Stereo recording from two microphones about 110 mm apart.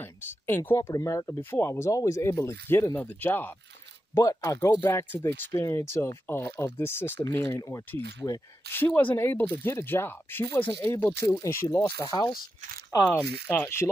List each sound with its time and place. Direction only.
0.0 s speech: 20° left (ahead or behind)
4.1 s speech: 30° left (ahead or behind)
11.2 s speech: 30° left (ahead or behind)
13.5 s speech: 20° left (ahead or behind)